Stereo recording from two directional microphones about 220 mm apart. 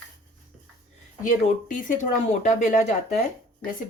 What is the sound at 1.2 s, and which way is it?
Speech, 35° left (ahead or behind).